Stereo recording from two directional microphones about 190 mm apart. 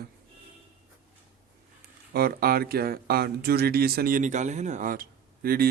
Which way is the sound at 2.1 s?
55° right (ahead or behind).